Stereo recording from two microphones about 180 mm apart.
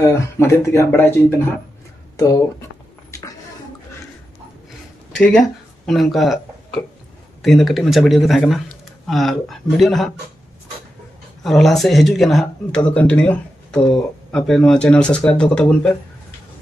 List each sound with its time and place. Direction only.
0.0 s speech: 15° left (ahead or behind)
5.1 s speech: 5° left (ahead or behind)
11.4 s speech: centre (ahead or behind)